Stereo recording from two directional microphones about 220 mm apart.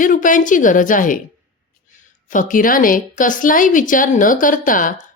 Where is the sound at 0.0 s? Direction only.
35° left (ahead or behind).